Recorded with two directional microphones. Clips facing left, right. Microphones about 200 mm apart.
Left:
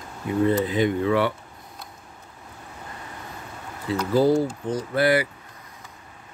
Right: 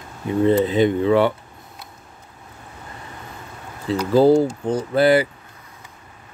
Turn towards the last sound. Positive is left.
turn(degrees=-25)  # may be behind; listen again after turning